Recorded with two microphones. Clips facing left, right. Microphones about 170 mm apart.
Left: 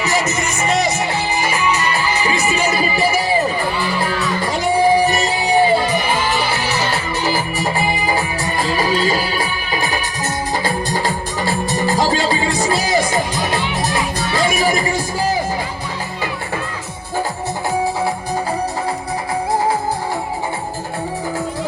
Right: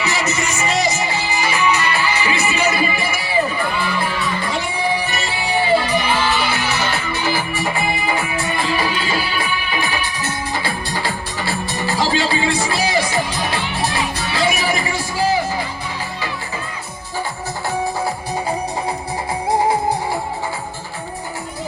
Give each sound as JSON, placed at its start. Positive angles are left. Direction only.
{"t": 0.0, "sound": "music", "side_deg": 45}
{"t": 4.5, "sound": "music", "side_deg": 40}
{"t": 6.7, "sound": "music", "side_deg": 40}